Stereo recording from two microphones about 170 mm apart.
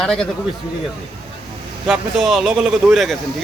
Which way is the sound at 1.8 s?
Centre (ahead or behind).